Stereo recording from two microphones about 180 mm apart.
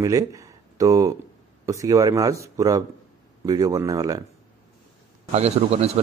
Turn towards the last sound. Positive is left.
turn(degrees=-35)  # may be behind; listen again after turning